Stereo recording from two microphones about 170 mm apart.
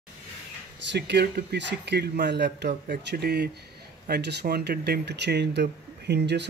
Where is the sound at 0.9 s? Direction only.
75° right (ahead or behind).